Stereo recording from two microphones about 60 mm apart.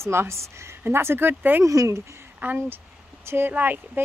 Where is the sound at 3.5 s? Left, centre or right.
Right.